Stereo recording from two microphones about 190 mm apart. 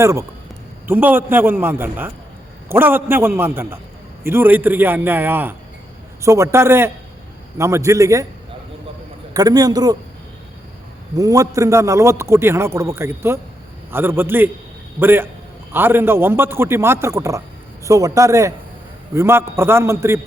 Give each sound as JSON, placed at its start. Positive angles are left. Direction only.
{"t": 0.0, "sound": "a man's voice", "side_deg": -15}
{"t": 9.3, "sound": "a man's voice", "side_deg": -20}
{"t": 11.2, "sound": "a man's voice", "side_deg": -15}